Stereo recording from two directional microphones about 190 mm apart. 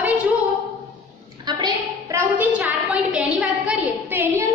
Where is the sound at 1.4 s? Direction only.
20° right (ahead or behind).